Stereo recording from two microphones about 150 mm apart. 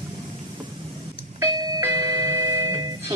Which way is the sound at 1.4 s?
25° right (ahead or behind).